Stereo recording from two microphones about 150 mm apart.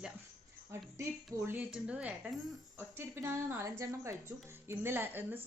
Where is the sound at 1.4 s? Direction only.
10° right (ahead or behind).